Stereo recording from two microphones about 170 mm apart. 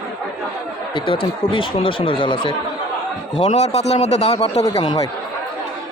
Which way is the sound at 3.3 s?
40° left (ahead or behind).